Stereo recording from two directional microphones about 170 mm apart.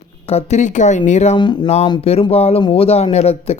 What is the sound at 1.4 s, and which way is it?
Speech, 25° left (ahead or behind).